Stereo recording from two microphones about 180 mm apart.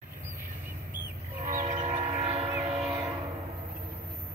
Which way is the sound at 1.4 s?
45° right (ahead or behind).